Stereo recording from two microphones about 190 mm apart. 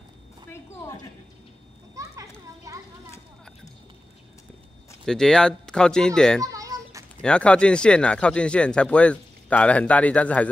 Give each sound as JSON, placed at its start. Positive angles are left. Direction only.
{"t": 2.7, "sound": "children playing", "side_deg": -15}
{"t": 5.0, "sound": "speech", "side_deg": 5}
{"t": 6.4, "sound": "children playing", "side_deg": -20}
{"t": 7.2, "sound": "speech", "side_deg": 5}